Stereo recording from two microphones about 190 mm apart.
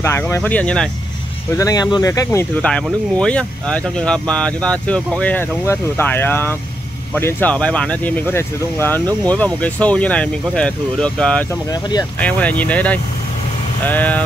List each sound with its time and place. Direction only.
0.0 s speech: 15° left (ahead or behind)
1.6 s speech: 20° left (ahead or behind)
2.6 s speech: 5° left (ahead or behind)